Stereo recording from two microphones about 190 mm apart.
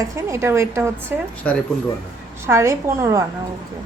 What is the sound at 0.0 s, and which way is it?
Speech, 15° right (ahead or behind).